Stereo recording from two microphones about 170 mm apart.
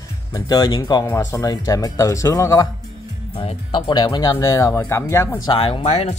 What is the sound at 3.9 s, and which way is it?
Speech, 25° left (ahead or behind).